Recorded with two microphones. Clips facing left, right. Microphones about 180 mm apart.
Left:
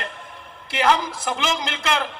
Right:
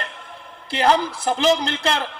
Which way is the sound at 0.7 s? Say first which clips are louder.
Right 2 dB; 35° right (ahead or behind).